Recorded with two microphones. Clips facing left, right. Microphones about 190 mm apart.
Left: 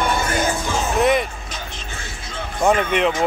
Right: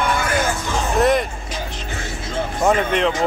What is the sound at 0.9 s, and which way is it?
Music, centre (ahead or behind).